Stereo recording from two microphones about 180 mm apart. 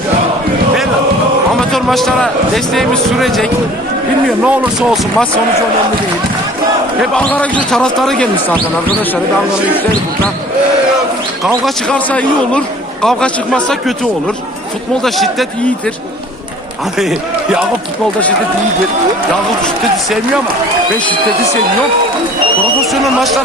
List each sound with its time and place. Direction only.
1.7 s speech: centre (ahead or behind)
7.2 s speech: 10° left (ahead or behind)
11.4 s speech: centre (ahead or behind)
17.0 s speech: 5° right (ahead or behind)
19.6 s speech: centre (ahead or behind)
22.9 s speech: centre (ahead or behind)